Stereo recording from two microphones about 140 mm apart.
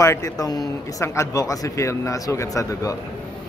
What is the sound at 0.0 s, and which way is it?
Speech, 25° left (ahead or behind).